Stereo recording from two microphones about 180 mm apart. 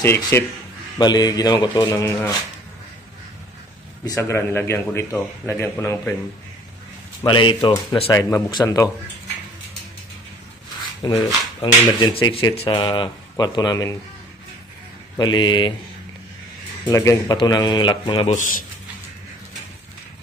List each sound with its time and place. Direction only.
0.0 s a man's voice: 15° left (ahead or behind)
4.0 s a man's voice: 15° left (ahead or behind)
7.2 s speech: 25° left (ahead or behind)
11.0 s speech: 20° left (ahead or behind)
15.1 s speech: 25° left (ahead or behind)
16.8 s a man's voice: 15° left (ahead or behind)
18.3 s a man's voice: 45° left (ahead or behind)